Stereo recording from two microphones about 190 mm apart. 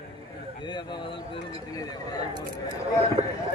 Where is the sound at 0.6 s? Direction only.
25° left (ahead or behind).